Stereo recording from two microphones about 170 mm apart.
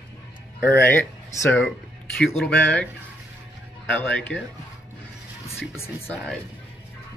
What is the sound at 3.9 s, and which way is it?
Speech, 10° left (ahead or behind).